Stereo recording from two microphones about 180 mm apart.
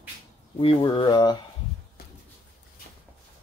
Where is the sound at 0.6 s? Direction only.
30° left (ahead or behind).